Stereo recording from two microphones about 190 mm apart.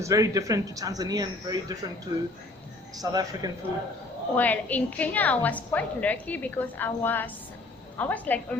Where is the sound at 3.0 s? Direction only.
20° right (ahead or behind).